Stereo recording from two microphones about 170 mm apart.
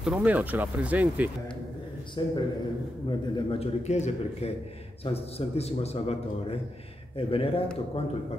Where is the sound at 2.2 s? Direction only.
25° left (ahead or behind).